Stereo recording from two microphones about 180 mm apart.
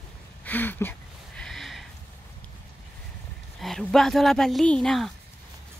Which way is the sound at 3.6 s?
Centre (ahead or behind).